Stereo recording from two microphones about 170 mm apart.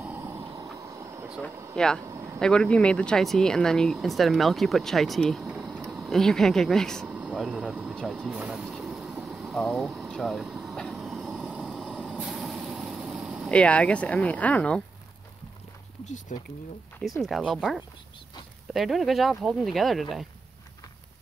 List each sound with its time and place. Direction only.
0.0 s a sound: 10° right (ahead or behind)
0.8 s vehicle: 15° right (ahead or behind)
1.8 s speech: 5° left (ahead or behind)
2.0 s vehicle: 20° right (ahead or behind)
2.3 s speech: 5° left (ahead or behind)
7.1 s vehicle: 5° right (ahead or behind)
16.3 s speech: 45° left (ahead or behind)
17.2 s speech: 5° right (ahead or behind)